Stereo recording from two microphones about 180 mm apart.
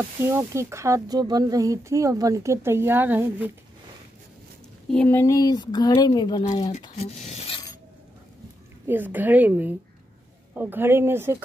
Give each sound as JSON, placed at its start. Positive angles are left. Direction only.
{"t": 0.2, "sound": "speech", "side_deg": -15}
{"t": 4.9, "sound": "speech", "side_deg": 10}
{"t": 7.0, "sound": "speech", "side_deg": 35}
{"t": 8.8, "sound": "speech", "side_deg": -10}